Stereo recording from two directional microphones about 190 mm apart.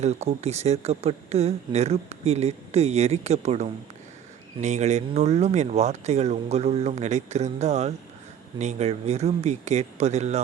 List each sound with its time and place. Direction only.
0.0 s speech: 35° right (ahead or behind)